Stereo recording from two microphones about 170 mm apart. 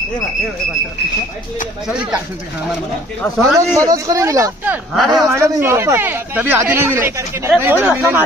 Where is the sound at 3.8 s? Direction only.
20° right (ahead or behind).